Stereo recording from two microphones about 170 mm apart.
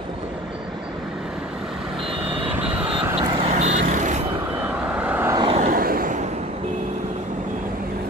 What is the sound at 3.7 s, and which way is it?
Vehicle, 45° right (ahead or behind).